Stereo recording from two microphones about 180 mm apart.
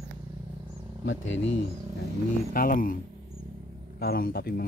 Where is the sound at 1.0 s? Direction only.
90° left.